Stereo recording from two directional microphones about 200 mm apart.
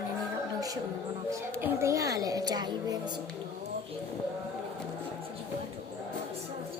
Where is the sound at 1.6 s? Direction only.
15° right (ahead or behind).